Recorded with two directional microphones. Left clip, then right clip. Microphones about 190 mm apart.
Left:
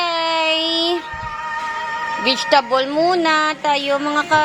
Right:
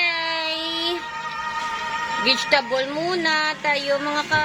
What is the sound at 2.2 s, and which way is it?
A woman's voice, 25° left (ahead or behind).